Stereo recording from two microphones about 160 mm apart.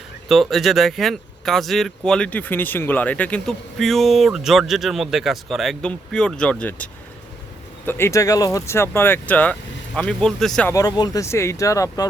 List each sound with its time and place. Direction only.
0.3 s speech: centre (ahead or behind)
10.7 s speech: 20° left (ahead or behind)